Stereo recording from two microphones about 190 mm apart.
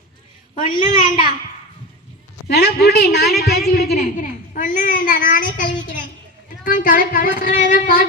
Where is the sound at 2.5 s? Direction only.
60° left (ahead or behind).